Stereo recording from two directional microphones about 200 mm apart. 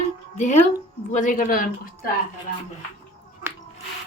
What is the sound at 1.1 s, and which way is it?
Speech, 40° left (ahead or behind).